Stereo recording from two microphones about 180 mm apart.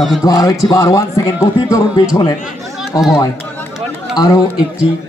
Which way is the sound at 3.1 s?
20° left (ahead or behind).